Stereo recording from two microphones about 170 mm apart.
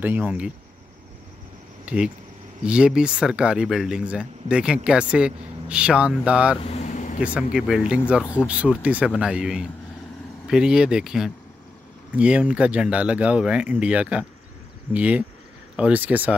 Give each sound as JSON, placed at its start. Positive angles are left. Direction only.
{"t": 0.0, "sound": "speech", "side_deg": -10}
{"t": 1.9, "sound": "speech", "side_deg": -5}
{"t": 6.6, "sound": "vehicle", "side_deg": 40}
{"t": 7.3, "sound": "speech", "side_deg": -5}
{"t": 8.2, "sound": "speech", "side_deg": 15}
{"t": 8.5, "sound": "speech", "side_deg": -5}